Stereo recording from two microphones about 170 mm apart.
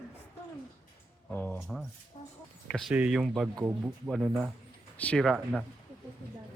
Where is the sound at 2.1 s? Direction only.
30° left (ahead or behind).